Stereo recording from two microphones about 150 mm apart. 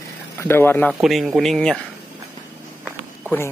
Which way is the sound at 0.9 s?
Centre (ahead or behind).